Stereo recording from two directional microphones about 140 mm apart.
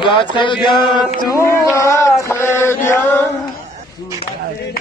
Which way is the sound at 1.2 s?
20° left (ahead or behind).